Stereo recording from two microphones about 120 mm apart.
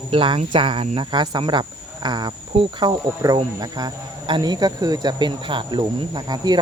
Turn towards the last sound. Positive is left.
turn(degrees=-35)  # may be behind; listen again after turning